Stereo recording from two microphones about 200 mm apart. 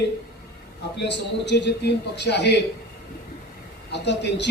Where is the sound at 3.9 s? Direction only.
60° left (ahead or behind).